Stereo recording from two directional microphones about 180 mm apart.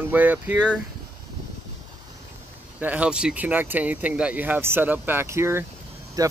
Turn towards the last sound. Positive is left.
turn(degrees=-20)  # may be behind; listen again after turning